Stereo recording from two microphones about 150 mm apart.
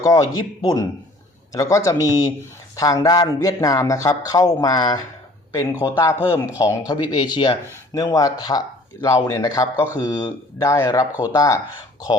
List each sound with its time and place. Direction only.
0.0 s speech: 20° left (ahead or behind)